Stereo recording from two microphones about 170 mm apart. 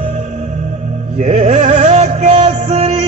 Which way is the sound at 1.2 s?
40° right (ahead or behind).